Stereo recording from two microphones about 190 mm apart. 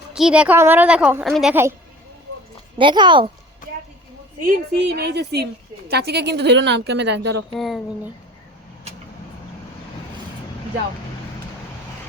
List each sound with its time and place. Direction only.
0.1 s a woman's voice: 5° right (ahead or behind)
2.7 s speech: 25° right (ahead or behind)
4.4 s a woman's voice: 50° right (ahead or behind); by 7.4 s 70° right (ahead or behind)
7.5 s speech: centre (ahead or behind)